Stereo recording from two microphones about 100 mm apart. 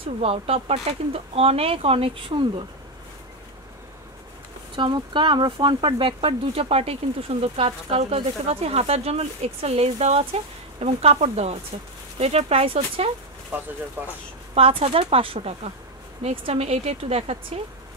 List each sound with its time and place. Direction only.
0.0 s speech: 75° right (ahead or behind); by 2.6 s 60° right (ahead or behind)
4.7 s speech: 50° right (ahead or behind); by 13.1 s 80° right
13.5 s speech: 20° right (ahead or behind)
14.5 s speech: 70° right (ahead or behind)